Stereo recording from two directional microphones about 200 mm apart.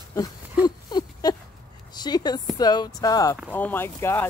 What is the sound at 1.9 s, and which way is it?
A woman's voice, 20° left (ahead or behind).